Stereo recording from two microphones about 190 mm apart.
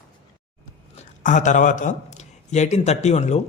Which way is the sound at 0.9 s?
40° left (ahead or behind).